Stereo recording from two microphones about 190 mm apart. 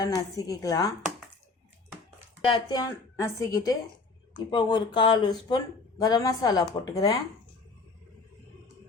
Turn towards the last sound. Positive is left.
turn(degrees=20)  # may be behind; listen again after turning